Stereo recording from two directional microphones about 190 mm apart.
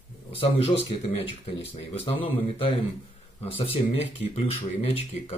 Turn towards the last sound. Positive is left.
turn(degrees=30)  # may be behind; listen again after turning